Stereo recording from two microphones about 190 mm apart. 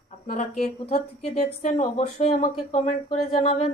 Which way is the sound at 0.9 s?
35° left (ahead or behind).